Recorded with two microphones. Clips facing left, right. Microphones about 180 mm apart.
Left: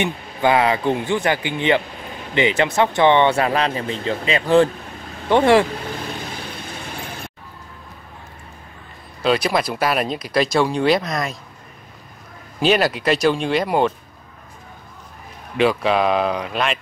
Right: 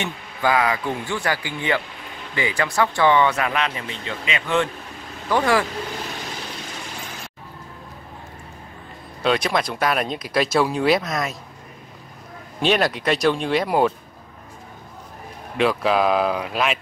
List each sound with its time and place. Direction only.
0.0 s speech: 25° left (ahead or behind)
9.2 s speech: 5° left (ahead or behind)
12.5 s speech: 5° left (ahead or behind)
15.5 s speech: centre (ahead or behind)